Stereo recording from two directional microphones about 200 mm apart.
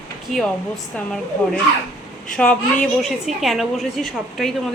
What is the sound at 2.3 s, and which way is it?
A woman's voice, 5° left (ahead or behind).